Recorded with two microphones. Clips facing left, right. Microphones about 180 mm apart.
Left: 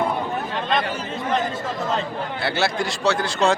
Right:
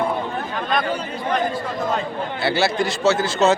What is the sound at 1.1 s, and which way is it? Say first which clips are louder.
Speech: left 1 dB; 25° left (ahead or behind).